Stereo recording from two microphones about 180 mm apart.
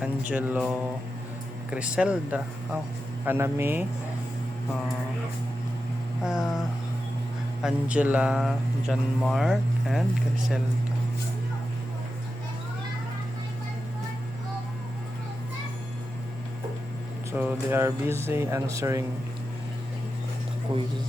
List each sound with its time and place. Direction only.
0.0 s music: 10° right (ahead or behind)
6.2 s speech: centre (ahead or behind)
17.3 s music: 10° right (ahead or behind)
20.7 s speech: 25° right (ahead or behind)